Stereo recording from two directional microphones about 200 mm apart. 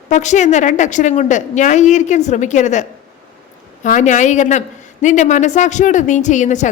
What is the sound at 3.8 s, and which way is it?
A woman's voice, 40° left (ahead or behind).